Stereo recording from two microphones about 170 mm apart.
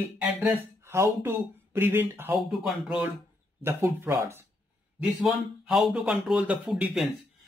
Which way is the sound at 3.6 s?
15° right (ahead or behind).